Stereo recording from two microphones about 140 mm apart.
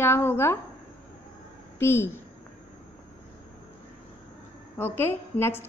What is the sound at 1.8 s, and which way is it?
Speech, 15° left (ahead or behind).